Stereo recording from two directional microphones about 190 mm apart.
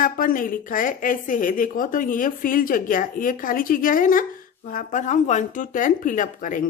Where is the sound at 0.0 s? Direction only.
45° left (ahead or behind).